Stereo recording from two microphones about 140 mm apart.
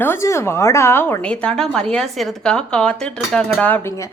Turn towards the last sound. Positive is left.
turn(degrees=15)  # may be behind; listen again after turning